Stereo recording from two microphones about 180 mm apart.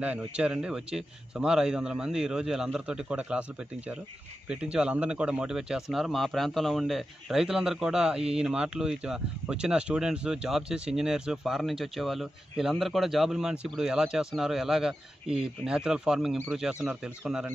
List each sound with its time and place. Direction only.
0.4 s speech: 5° right (ahead or behind)
4.5 s speech: 5° right (ahead or behind)